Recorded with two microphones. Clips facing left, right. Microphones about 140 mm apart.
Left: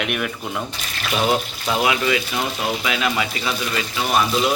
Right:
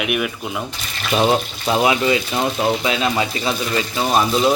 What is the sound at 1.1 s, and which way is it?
Speech, 30° right (ahead or behind).